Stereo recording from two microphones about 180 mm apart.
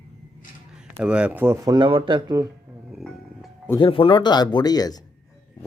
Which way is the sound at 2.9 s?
Centre (ahead or behind).